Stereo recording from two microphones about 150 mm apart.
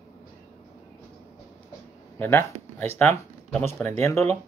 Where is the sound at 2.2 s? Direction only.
15° left (ahead or behind).